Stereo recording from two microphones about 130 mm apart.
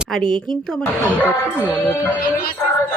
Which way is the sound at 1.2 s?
15° left (ahead or behind).